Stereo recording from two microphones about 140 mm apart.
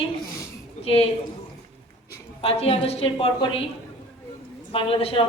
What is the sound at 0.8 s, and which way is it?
Speech, 45° left (ahead or behind).